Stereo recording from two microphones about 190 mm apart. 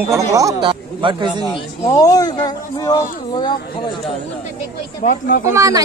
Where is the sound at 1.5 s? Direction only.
30° left (ahead or behind).